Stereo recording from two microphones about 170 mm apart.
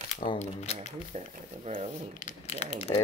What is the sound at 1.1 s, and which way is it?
Speech, 40° right (ahead or behind).